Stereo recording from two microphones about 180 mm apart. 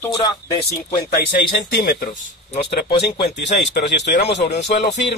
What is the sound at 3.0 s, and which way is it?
Speech, 70° left (ahead or behind).